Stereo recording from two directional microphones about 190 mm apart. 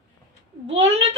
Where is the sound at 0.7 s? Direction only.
35° right (ahead or behind).